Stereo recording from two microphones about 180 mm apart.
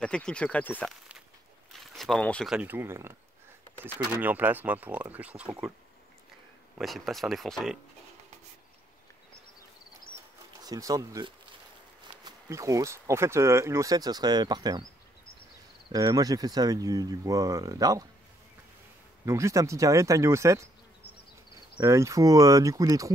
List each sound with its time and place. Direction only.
0.0 s speech: 5° left (ahead or behind)
6.8 s speech: centre (ahead or behind)
10.6 s speech: 20° right (ahead or behind)
15.9 s speech: 20° right (ahead or behind)
19.2 s speech: 15° right (ahead or behind)
21.7 s speech: 15° right (ahead or behind)